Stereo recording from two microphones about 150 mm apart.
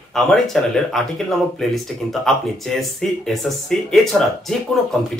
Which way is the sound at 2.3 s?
Centre (ahead or behind).